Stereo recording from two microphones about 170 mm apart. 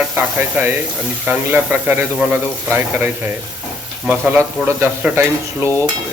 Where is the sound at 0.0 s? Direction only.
5° right (ahead or behind).